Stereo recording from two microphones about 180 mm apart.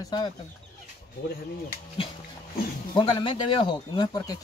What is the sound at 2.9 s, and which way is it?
Speech, 25° left (ahead or behind).